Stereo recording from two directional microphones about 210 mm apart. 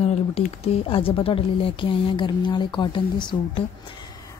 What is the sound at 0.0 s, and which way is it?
Speech, 30° left (ahead or behind).